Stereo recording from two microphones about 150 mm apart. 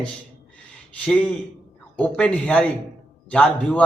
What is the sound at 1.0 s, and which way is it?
A man's voice, 5° left (ahead or behind).